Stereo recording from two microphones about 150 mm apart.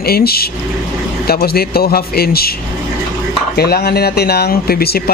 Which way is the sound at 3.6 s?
90° left.